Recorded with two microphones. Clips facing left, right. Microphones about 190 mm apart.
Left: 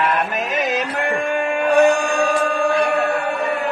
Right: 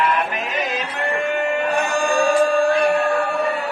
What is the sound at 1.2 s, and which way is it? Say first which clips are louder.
Music: right 1 dB; 50° left (ahead or behind).